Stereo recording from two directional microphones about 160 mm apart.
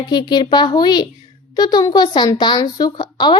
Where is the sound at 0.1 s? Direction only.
25° left (ahead or behind).